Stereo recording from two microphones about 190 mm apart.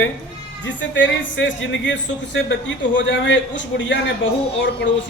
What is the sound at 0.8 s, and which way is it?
Speech, 75° left (ahead or behind).